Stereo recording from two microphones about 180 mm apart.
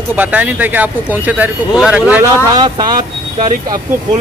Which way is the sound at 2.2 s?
25° right (ahead or behind).